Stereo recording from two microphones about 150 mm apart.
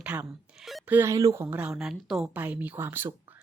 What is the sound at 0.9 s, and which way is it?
A woman's voice, 15° right (ahead or behind).